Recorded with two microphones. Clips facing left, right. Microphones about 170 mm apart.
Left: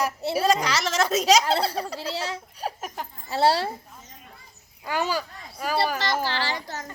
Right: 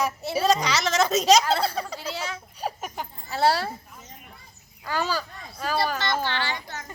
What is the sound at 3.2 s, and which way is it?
Speech, 25° left (ahead or behind).